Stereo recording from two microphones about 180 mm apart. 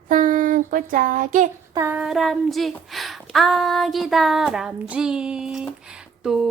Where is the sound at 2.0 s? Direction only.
Centre (ahead or behind).